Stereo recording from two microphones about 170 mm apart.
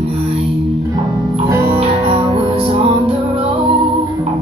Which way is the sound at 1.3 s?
35° right (ahead or behind).